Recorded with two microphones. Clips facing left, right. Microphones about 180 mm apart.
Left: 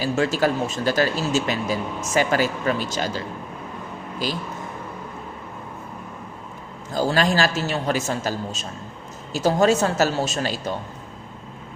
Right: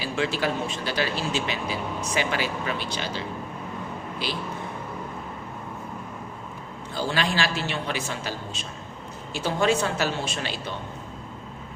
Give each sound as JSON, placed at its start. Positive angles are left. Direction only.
{"t": 0.0, "sound": "speech", "side_deg": 40}
{"t": 6.9, "sound": "a man's voice", "side_deg": 40}